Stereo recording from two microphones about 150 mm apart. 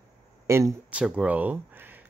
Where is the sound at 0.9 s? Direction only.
10° right (ahead or behind).